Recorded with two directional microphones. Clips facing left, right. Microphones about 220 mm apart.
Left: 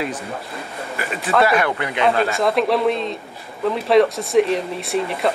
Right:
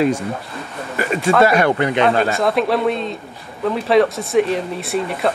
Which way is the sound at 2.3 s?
Centre (ahead or behind).